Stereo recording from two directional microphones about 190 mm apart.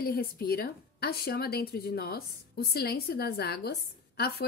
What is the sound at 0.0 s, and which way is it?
Speech, 50° left (ahead or behind).